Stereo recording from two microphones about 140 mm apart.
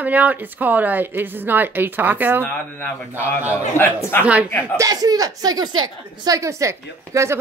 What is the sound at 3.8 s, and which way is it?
Speech, 15° left (ahead or behind).